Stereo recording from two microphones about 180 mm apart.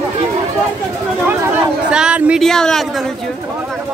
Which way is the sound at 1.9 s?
5° right (ahead or behind).